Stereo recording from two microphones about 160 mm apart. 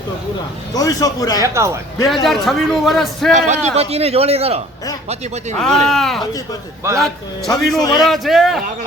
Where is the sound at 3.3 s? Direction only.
45° right (ahead or behind).